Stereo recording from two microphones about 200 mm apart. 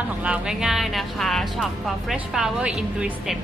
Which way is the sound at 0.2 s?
5° right (ahead or behind).